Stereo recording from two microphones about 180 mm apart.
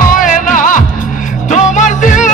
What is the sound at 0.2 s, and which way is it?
Music, 45° left (ahead or behind).